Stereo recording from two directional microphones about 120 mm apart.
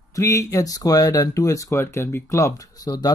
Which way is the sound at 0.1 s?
25° left (ahead or behind).